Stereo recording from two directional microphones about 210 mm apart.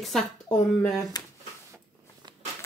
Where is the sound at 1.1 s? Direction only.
20° left (ahead or behind).